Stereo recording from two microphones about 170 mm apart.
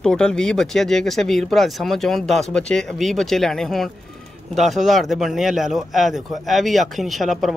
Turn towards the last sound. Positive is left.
turn(degrees=0)  # may be behind; listen again after turning